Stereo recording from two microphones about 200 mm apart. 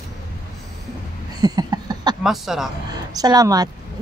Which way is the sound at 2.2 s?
Centre (ahead or behind).